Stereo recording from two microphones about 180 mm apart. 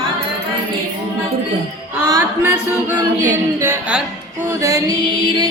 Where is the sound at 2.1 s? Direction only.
15° right (ahead or behind).